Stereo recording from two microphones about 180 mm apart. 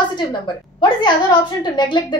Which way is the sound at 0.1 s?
25° left (ahead or behind).